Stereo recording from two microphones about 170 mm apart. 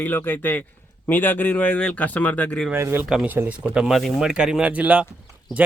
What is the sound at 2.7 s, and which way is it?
Speech, 15° right (ahead or behind).